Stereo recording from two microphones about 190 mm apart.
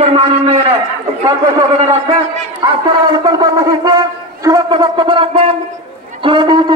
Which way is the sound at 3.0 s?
20° right (ahead or behind).